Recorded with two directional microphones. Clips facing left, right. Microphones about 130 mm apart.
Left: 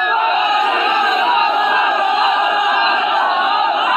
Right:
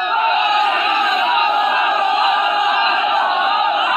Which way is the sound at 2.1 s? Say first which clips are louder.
Left 1 dB; centre (ahead or behind).